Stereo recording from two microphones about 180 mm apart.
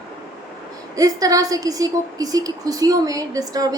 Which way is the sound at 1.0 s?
20° right (ahead or behind).